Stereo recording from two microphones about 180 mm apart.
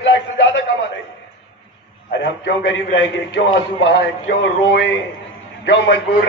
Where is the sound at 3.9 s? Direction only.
75° left (ahead or behind).